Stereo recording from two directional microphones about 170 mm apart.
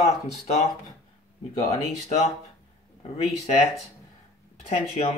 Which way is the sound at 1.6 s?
40° left (ahead or behind).